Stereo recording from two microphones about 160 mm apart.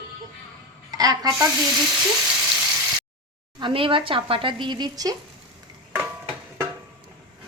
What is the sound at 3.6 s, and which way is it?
Speech, 35° right (ahead or behind).